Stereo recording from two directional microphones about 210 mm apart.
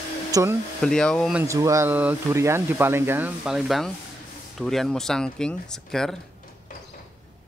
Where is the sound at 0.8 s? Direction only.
5° left (ahead or behind).